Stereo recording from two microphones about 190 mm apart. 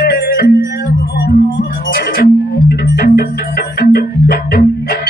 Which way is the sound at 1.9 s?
50° left (ahead or behind).